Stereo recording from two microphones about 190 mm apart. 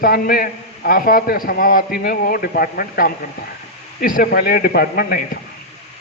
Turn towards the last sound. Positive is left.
turn(degrees=50)  # may be behind; listen again after turning